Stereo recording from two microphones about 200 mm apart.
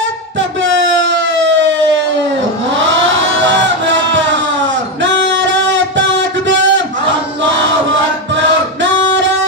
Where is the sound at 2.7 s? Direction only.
70° right (ahead or behind).